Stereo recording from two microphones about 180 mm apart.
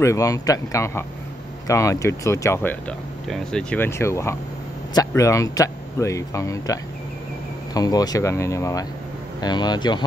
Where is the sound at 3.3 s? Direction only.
5° left (ahead or behind).